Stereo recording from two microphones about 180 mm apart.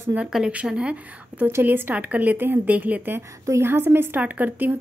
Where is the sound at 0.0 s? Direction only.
5° right (ahead or behind).